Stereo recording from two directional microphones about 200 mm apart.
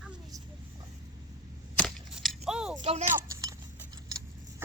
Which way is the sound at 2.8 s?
30° right (ahead or behind).